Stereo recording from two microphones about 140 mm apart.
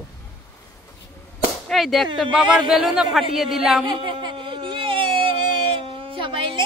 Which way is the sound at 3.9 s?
35° right (ahead or behind).